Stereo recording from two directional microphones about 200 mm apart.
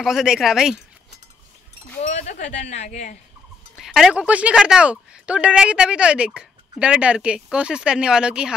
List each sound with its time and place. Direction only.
0.0 s speech: centre (ahead or behind)
2.0 s speech: 35° left (ahead or behind)
3.7 s speech: centre (ahead or behind)